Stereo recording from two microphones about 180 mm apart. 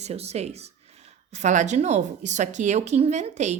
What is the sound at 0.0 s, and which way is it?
A woman's voice, 35° right (ahead or behind).